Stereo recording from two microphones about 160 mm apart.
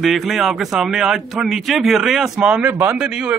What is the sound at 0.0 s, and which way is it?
A man's voice, centre (ahead or behind).